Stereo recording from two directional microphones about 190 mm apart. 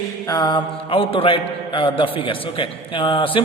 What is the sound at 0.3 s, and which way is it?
A man's voice, 20° left (ahead or behind).